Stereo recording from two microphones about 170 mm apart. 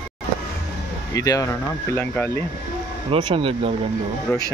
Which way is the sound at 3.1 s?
35° right (ahead or behind).